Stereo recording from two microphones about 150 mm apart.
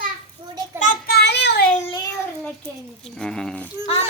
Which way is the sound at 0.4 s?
35° right (ahead or behind).